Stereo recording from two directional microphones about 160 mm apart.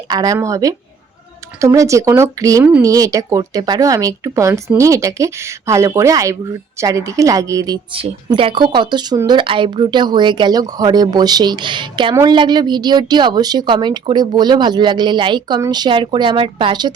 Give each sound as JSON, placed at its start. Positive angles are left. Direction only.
{"t": 0.1, "sound": "speech", "side_deg": -25}
{"t": 7.9, "sound": "speech", "side_deg": -35}